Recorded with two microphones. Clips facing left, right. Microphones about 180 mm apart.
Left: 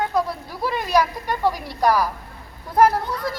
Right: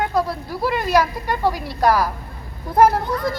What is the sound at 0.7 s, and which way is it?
Speech, 15° left (ahead or behind).